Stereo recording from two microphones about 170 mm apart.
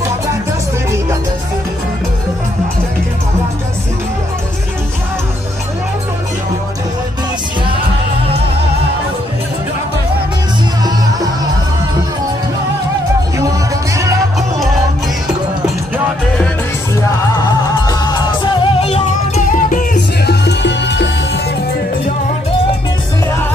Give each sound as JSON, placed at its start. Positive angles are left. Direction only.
{"t": 18.6, "sound": "music", "side_deg": 35}
{"t": 19.5, "sound": "music", "side_deg": 50}
{"t": 20.2, "sound": "music", "side_deg": 80}